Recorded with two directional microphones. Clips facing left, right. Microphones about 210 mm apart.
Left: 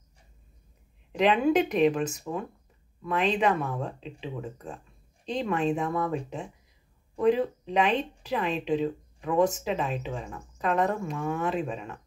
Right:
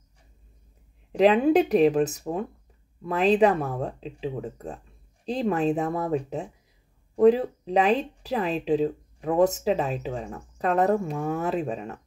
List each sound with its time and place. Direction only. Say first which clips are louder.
1.1 s speech: right 4 dB; 35° right (ahead or behind)